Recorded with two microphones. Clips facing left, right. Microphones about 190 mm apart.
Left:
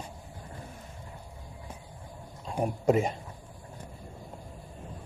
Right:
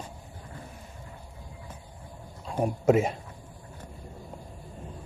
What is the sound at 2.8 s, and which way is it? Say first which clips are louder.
Speech: right 3 dB; 5° right (ahead or behind).